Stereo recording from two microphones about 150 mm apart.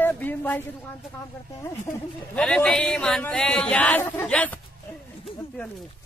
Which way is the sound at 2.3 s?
10° left (ahead or behind).